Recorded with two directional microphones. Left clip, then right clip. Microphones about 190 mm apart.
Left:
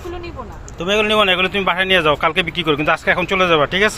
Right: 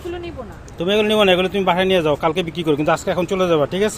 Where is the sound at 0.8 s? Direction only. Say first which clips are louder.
Left 1 dB; 35° right (ahead or behind).